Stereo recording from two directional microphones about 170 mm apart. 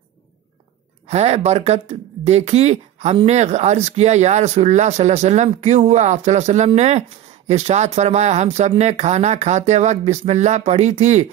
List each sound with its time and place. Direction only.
1.0 s speech: 40° right (ahead or behind)